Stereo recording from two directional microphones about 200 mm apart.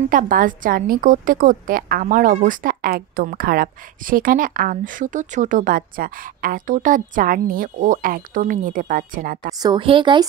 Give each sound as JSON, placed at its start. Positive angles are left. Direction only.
{"t": 0.1, "sound": "a woman's voice", "side_deg": -45}
{"t": 9.6, "sound": "a woman's voice", "side_deg": -25}